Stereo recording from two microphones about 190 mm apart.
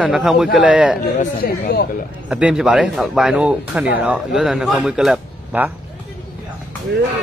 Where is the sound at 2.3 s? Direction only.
5° right (ahead or behind).